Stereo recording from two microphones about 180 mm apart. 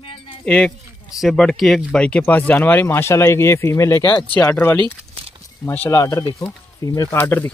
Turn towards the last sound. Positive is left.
turn(degrees=10)  # may be behind; listen again after turning